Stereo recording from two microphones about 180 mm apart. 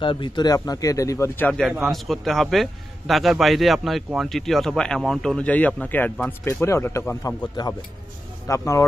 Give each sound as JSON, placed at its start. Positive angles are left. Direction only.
{"t": 0.0, "sound": "a man's voice", "side_deg": 25}